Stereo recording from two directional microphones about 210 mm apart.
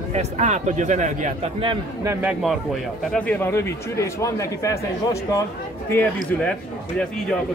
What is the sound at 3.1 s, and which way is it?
A man's voice, 5° left (ahead or behind).